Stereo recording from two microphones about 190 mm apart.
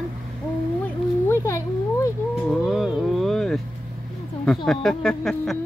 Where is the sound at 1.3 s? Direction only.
15° left (ahead or behind).